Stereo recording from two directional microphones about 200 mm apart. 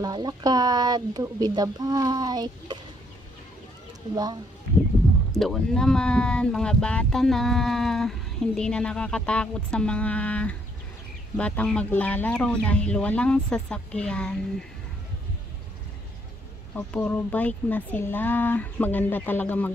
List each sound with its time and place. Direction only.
0.0 s speech: 20° right (ahead or behind)
4.1 s speech: 20° right (ahead or behind)
5.4 s speech: centre (ahead or behind)
16.7 s speech: 5° left (ahead or behind)